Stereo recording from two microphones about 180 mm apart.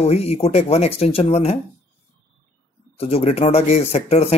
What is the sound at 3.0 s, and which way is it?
Speech, 35° left (ahead or behind).